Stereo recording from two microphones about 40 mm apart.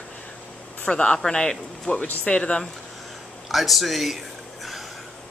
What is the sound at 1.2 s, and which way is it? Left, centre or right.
Speech, centre.